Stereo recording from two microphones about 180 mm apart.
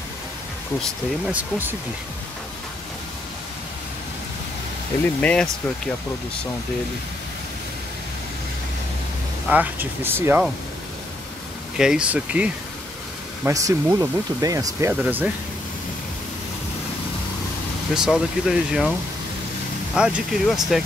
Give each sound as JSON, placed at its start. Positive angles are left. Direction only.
{"t": 1.2, "sound": "speech", "side_deg": -10}
{"t": 5.2, "sound": "speech", "side_deg": 5}
{"t": 9.5, "sound": "speech", "side_deg": -10}
{"t": 11.7, "sound": "speech", "side_deg": -5}
{"t": 13.4, "sound": "speech", "side_deg": -15}
{"t": 17.9, "sound": "speech", "side_deg": -5}
{"t": 19.9, "sound": "speech", "side_deg": -5}